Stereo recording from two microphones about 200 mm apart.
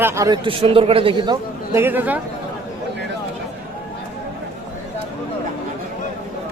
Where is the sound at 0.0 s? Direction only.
15° right (ahead or behind).